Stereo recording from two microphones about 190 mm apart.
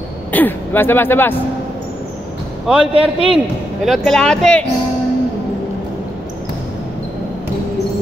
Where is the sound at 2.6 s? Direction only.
5° right (ahead or behind).